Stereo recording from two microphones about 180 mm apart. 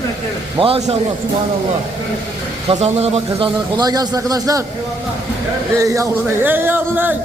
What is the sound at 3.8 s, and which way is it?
Speech, 20° right (ahead or behind).